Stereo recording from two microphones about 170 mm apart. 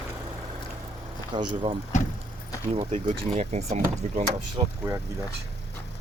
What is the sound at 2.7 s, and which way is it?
Speech, 40° right (ahead or behind).